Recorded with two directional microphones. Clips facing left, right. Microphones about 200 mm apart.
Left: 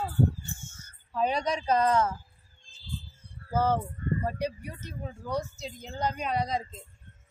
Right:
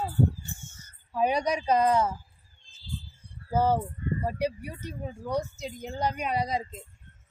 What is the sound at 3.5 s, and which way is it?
Speech, 15° right (ahead or behind).